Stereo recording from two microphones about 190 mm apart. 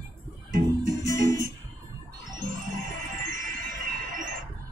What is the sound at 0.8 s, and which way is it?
Music, 15° left (ahead or behind).